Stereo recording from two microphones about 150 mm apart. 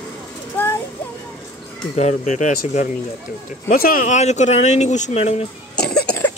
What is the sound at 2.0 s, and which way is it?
Speech, 50° left (ahead or behind).